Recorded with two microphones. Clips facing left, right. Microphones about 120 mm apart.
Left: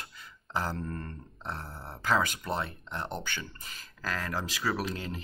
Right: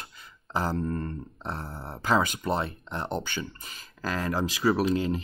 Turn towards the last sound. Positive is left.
turn(degrees=-20)  # may be behind; listen again after turning